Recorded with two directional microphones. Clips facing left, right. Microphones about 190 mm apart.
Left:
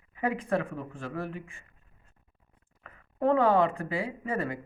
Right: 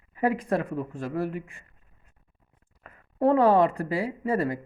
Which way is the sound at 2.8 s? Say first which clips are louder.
Right 4 dB; 35° right (ahead or behind).